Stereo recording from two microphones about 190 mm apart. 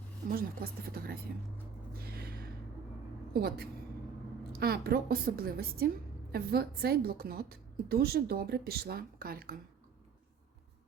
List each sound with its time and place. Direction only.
0.3 s speech: 50° right (ahead or behind)
2.0 s a sound: 55° right (ahead or behind)
3.3 s a woman's voice: 60° right (ahead or behind)